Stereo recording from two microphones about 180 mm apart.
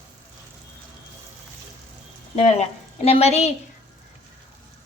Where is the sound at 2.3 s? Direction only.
35° left (ahead or behind).